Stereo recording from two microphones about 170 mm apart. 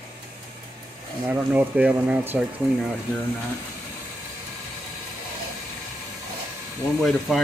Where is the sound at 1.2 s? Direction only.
10° right (ahead or behind).